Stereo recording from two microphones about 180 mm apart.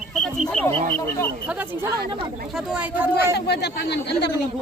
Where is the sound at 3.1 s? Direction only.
70° left (ahead or behind).